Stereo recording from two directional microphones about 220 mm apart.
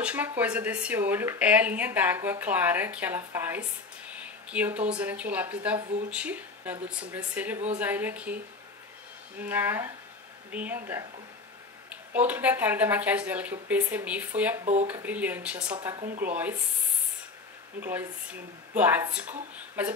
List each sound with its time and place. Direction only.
0.0 s speech: 5° right (ahead or behind)
9.4 s speech: 10° right (ahead or behind)
14.6 s speech: 30° right (ahead or behind)
14.9 s speech: 5° right (ahead or behind)
17.7 s a woman's voice: 10° right (ahead or behind)